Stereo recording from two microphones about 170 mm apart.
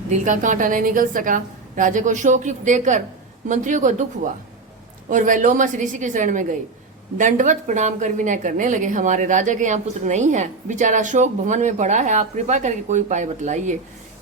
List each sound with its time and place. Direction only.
0.3 s a woman's voice: 50° right (ahead or behind)